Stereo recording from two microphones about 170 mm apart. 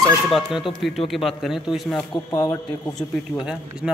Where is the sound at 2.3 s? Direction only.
20° left (ahead or behind).